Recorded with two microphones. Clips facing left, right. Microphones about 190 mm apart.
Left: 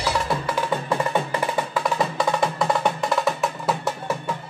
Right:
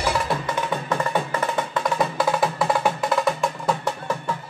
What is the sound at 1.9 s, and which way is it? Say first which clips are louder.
Music: right 2 dB; centre (ahead or behind).